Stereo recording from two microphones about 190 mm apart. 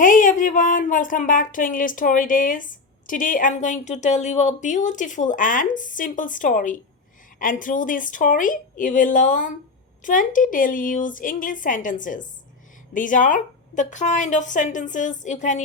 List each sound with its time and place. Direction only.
0.0 s a woman's voice: 45° left (ahead or behind)